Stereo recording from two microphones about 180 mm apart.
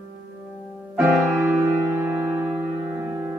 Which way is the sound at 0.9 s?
10° right (ahead or behind).